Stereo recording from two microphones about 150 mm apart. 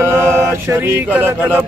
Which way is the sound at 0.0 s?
15° right (ahead or behind).